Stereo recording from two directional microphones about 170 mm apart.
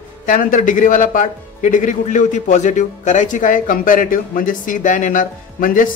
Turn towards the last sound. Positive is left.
turn(degrees=50)  # may be behind; listen again after turning